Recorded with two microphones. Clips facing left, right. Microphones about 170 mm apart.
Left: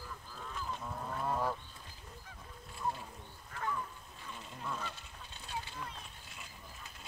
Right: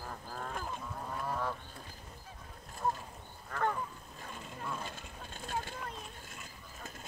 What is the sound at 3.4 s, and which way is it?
Goose, 60° right (ahead or behind).